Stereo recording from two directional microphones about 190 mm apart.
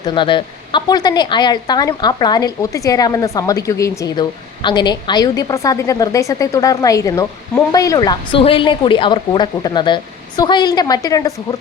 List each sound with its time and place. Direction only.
0.0 s speech: 25° left (ahead or behind)